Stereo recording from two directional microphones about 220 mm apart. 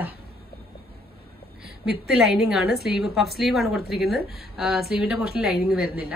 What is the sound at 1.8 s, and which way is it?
A woman's voice, centre (ahead or behind).